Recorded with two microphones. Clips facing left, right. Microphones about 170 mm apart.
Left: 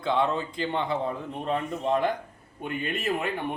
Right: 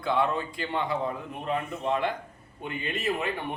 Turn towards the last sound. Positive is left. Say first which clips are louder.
# left 1 dB
turn(degrees=50)  # may be behind; listen again after turning